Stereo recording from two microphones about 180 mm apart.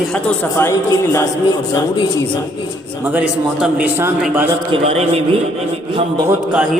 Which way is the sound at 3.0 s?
10° right (ahead or behind).